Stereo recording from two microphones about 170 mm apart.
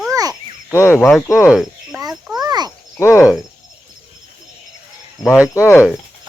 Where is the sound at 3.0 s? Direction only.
15° left (ahead or behind).